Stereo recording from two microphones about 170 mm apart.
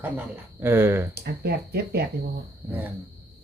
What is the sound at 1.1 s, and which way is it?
Speech, 70° right (ahead or behind).